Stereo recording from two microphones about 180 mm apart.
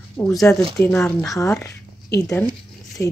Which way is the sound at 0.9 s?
15° left (ahead or behind).